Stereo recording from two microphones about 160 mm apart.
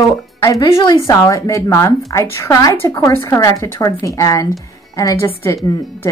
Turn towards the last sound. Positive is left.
turn(degrees=15)  # may be behind; listen again after turning